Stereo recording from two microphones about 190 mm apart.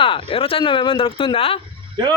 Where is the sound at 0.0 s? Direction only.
30° left (ahead or behind).